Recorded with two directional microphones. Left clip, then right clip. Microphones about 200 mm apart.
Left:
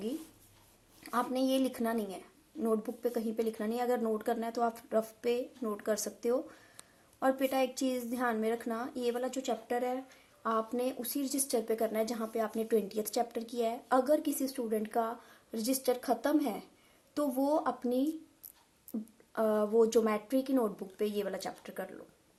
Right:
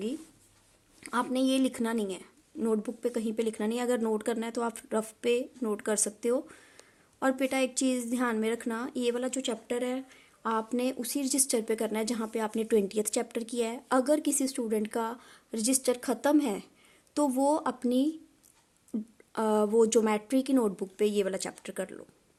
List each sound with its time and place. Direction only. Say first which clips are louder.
1.0 s a woman's voice: right 3 dB; 45° right (ahead or behind)